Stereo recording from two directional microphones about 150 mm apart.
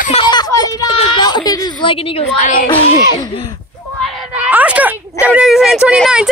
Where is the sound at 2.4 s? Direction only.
65° left (ahead or behind).